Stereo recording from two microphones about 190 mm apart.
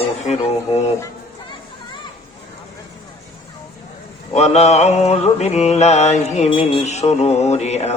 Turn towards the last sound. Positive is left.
turn(degrees=35)  # may be behind; listen again after turning